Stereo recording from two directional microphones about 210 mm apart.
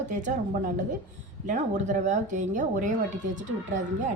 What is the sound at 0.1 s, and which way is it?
Speech, 35° right (ahead or behind).